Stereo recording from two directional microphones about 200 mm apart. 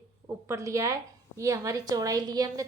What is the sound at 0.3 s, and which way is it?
A woman's voice, 15° right (ahead or behind).